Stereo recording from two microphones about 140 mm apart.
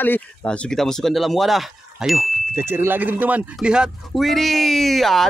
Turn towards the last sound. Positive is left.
turn(degrees=0)  # may be behind; listen again after turning